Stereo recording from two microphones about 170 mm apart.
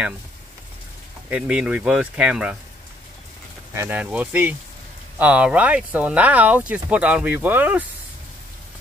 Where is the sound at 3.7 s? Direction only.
10° right (ahead or behind).